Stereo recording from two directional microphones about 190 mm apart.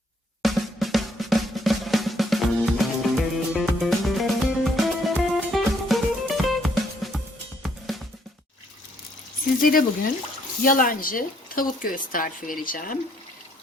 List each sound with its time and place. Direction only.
0.4 s drum: centre (ahead or behind)
7.6 s music: centre (ahead or behind)
9.6 s a sound: 50° left (ahead or behind)
10.6 s speech: 45° left (ahead or behind)